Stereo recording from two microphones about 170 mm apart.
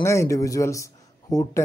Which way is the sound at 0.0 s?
15° left (ahead or behind).